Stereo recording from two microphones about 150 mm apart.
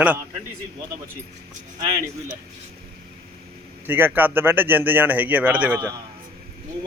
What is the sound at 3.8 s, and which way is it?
Speech, 15° right (ahead or behind).